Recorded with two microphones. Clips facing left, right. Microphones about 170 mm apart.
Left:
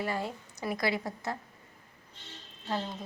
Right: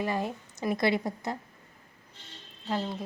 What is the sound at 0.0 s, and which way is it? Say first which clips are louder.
A woman's voice: right 3 dB; 15° right (ahead or behind).